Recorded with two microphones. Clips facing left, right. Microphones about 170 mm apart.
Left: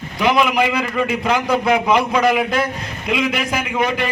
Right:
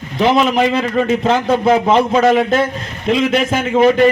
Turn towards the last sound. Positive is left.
turn(degrees=-25)  # may be behind; listen again after turning